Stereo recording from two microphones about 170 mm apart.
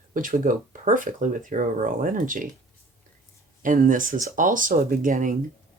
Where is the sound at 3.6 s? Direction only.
50° right (ahead or behind).